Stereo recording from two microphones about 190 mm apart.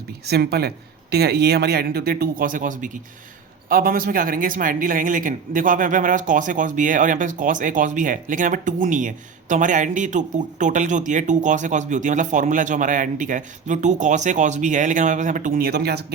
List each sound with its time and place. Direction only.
0.3 s speech: 60° right (ahead or behind)